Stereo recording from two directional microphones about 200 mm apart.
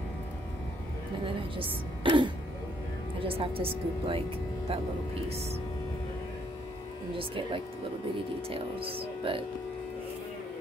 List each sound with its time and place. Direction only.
1.2 s a woman's voice: 25° right (ahead or behind)
7.2 s speech: 25° right (ahead or behind)